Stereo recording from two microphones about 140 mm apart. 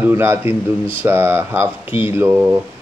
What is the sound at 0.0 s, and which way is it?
Speech, 15° right (ahead or behind).